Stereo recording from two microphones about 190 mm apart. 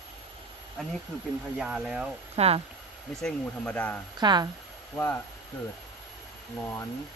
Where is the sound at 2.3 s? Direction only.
30° right (ahead or behind).